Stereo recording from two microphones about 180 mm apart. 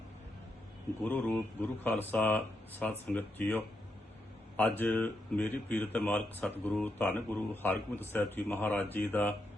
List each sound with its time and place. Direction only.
1.0 s speech: 10° left (ahead or behind)